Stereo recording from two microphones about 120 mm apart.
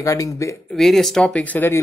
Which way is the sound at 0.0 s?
25° left (ahead or behind).